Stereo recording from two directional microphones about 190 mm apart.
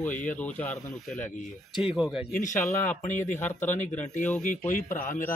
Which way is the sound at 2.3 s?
40° left (ahead or behind).